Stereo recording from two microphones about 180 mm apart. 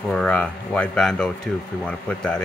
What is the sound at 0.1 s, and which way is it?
Speech, 5° left (ahead or behind).